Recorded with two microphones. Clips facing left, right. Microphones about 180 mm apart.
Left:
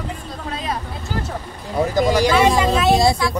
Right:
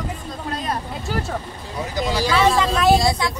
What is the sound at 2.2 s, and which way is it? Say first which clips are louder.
Speech: right 2 dB; 15° left (ahead or behind).